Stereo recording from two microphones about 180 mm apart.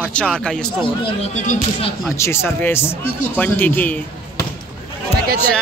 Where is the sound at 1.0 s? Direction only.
35° left (ahead or behind).